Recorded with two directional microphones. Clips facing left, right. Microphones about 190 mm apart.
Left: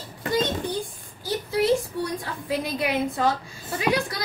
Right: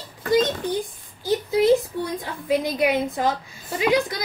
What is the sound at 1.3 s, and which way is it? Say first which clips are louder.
Speech: right 4 dB; 20° right (ahead or behind).